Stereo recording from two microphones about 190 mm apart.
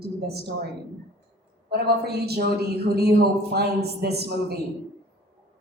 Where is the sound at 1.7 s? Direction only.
55° right (ahead or behind).